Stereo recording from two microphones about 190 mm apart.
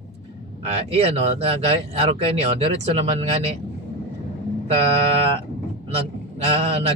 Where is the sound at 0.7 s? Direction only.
35° right (ahead or behind).